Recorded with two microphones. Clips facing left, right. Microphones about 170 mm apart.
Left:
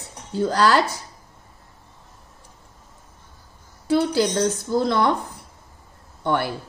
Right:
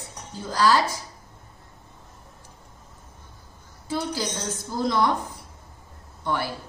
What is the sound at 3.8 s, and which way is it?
A woman's voice, 70° left (ahead or behind).